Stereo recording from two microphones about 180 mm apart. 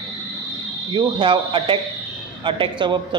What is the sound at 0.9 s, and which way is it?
A man's voice, 25° right (ahead or behind).